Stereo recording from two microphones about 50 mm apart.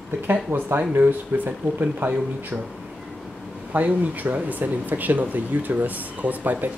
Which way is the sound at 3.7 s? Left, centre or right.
Right.